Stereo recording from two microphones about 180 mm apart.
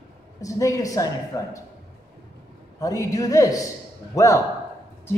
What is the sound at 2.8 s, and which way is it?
Speech, 20° left (ahead or behind).